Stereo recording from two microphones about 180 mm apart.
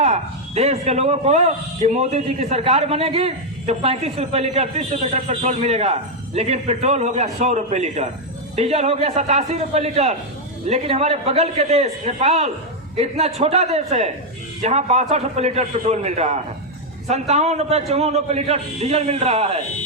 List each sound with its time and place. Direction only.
0.0 s a man's voice: 35° right (ahead or behind)